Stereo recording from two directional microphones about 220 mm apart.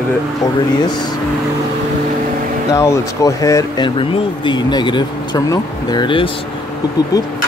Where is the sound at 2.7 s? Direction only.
15° left (ahead or behind).